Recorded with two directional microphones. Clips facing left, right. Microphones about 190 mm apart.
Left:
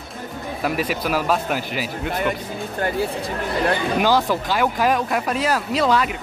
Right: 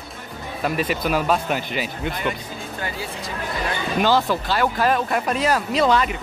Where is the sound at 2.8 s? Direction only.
55° left (ahead or behind).